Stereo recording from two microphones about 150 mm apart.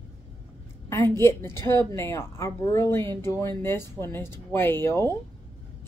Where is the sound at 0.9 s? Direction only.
15° left (ahead or behind).